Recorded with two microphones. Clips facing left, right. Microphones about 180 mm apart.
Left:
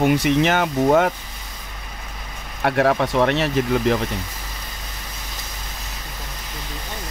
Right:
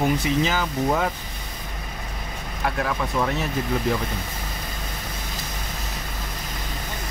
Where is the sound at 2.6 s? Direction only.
65° left (ahead or behind).